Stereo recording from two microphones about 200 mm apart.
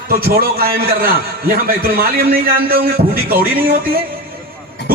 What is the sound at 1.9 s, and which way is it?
A man's voice, 50° right (ahead or behind).